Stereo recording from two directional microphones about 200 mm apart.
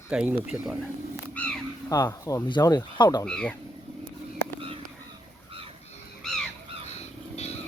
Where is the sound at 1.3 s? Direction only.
5° left (ahead or behind).